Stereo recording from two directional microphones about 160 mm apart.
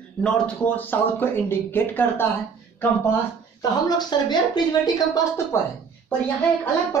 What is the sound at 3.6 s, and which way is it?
Speech, 25° left (ahead or behind).